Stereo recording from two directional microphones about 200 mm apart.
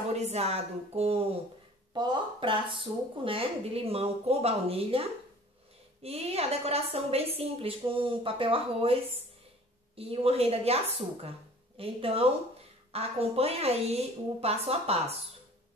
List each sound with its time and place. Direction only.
0.1 s a woman's voice: 35° right (ahead or behind)
6.0 s a woman's voice: 30° right (ahead or behind)